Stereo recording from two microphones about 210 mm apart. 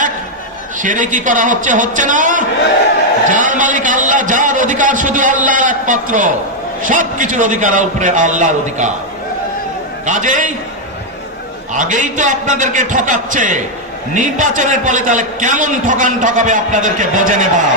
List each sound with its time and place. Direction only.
0.8 s a man's voice: 40° right (ahead or behind)
10.1 s a man's voice: 35° right (ahead or behind)
11.7 s a man's voice: 35° right (ahead or behind)